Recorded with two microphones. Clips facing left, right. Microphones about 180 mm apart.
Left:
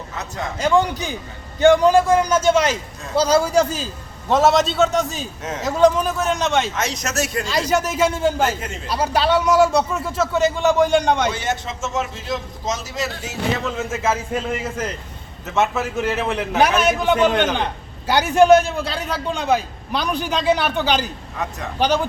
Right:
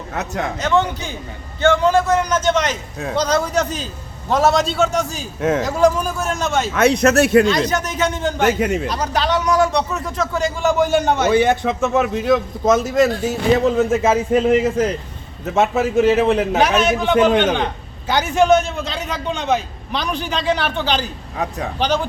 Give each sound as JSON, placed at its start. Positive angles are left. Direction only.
{"t": 0.1, "sound": "speech", "side_deg": -65}
{"t": 0.6, "sound": "a man's voice", "side_deg": 10}
{"t": 5.4, "sound": "a man's voice", "side_deg": -55}
{"t": 5.6, "sound": "a man's voice", "side_deg": 0}
{"t": 6.7, "sound": "a man's voice", "side_deg": -60}
{"t": 7.4, "sound": "a man's voice", "side_deg": 5}
{"t": 8.5, "sound": "a man's voice", "side_deg": -60}
{"t": 8.9, "sound": "a man's voice", "side_deg": 5}
{"t": 11.3, "sound": "a man's voice", "side_deg": -55}
{"t": 13.7, "sound": "speech", "side_deg": -35}
{"t": 14.1, "sound": "a man's voice", "side_deg": -15}
{"t": 16.2, "sound": "a man's voice", "side_deg": -25}
{"t": 16.6, "sound": "a man's voice", "side_deg": 10}